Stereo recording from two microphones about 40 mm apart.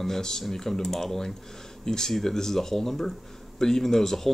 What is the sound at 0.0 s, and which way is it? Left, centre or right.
Speech, centre.